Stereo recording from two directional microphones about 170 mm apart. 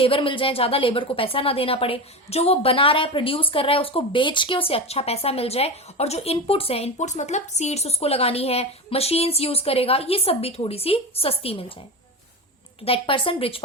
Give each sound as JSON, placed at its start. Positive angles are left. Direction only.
{"t": 0.0, "sound": "speech", "side_deg": 30}
{"t": 12.8, "sound": "speech", "side_deg": 35}